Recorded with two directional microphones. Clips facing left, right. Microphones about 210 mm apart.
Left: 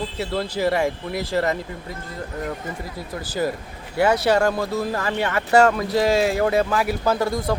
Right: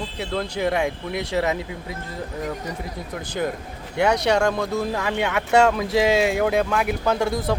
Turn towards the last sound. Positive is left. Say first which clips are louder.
# even
turn(degrees=0)  # may be behind; listen again after turning